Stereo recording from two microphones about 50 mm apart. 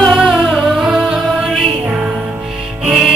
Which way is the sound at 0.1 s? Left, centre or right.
Centre.